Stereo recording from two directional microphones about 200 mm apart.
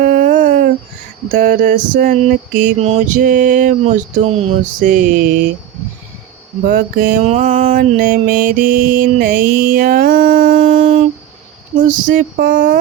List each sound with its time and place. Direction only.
0.0 s a sound: 45° right (ahead or behind)
1.3 s mantra: 40° right (ahead or behind)
6.7 s mantra: 45° right (ahead or behind)